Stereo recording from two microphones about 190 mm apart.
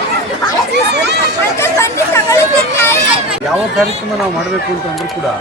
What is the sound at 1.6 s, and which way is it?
Chatter, 15° left (ahead or behind).